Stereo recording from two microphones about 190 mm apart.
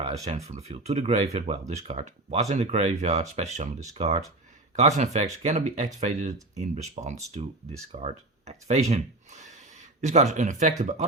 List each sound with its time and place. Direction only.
0.0 s speech: 35° right (ahead or behind)